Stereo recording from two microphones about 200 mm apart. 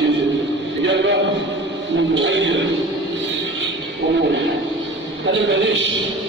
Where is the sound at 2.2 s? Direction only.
65° right (ahead or behind).